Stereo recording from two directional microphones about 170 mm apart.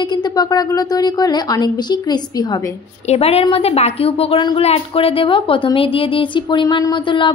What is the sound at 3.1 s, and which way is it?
A woman's voice, 35° left (ahead or behind).